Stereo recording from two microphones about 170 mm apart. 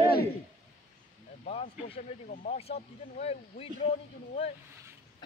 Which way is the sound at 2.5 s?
35° left (ahead or behind).